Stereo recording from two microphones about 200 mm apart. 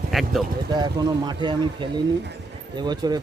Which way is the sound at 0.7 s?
20° right (ahead or behind).